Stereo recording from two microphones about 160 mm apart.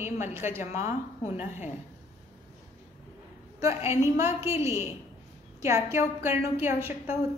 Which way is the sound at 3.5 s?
20° right (ahead or behind).